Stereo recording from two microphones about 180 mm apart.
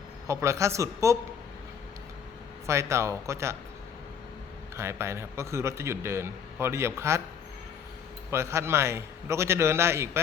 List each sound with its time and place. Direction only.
0.3 s a man's voice: 15° right (ahead or behind)
2.6 s a man's voice: 15° right (ahead or behind)
4.8 s a man's voice: 15° right (ahead or behind)
8.3 s a man's voice: 15° right (ahead or behind)